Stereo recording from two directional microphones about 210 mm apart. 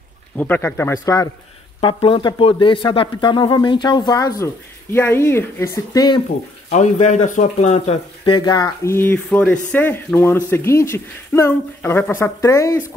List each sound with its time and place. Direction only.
0.4 s speech: 10° left (ahead or behind)
6.7 s speech: 35° left (ahead or behind)
8.4 s speech: 20° left (ahead or behind)